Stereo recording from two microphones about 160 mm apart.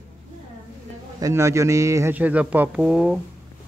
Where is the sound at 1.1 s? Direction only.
20° right (ahead or behind); by 3.2 s 5° right (ahead or behind).